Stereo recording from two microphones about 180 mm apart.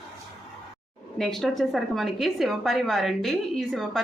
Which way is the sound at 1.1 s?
Centre (ahead or behind).